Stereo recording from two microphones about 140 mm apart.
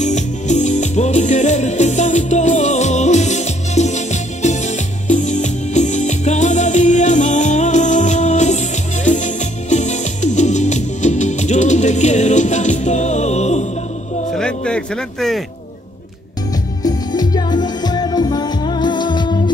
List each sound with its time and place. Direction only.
0.0 s music: 60° left (ahead or behind)
14.3 s music: 5° left (ahead or behind)
16.8 s music: 30° left (ahead or behind)